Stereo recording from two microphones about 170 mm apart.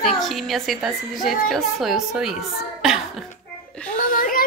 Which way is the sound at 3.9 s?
55° left (ahead or behind).